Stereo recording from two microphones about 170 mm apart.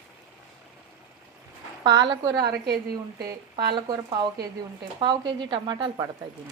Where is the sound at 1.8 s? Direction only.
25° right (ahead or behind).